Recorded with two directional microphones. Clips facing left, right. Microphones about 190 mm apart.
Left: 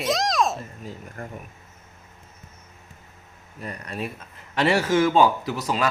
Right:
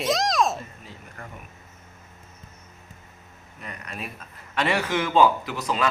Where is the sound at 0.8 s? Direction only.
40° left (ahead or behind).